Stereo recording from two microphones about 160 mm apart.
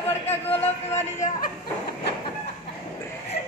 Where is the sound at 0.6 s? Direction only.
45° left (ahead or behind).